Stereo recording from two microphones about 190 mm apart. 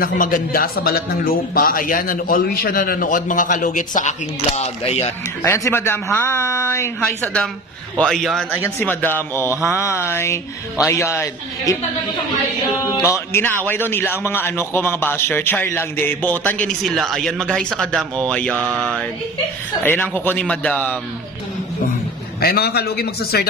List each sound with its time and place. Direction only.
0.0 s a man's voice: 45° left (ahead or behind)
5.4 s a man's voice: 15° left (ahead or behind)
8.6 s a man's voice: 10° left (ahead or behind)
13.1 s a man's voice: 15° left (ahead or behind)
22.4 s a man's voice: 55° left (ahead or behind)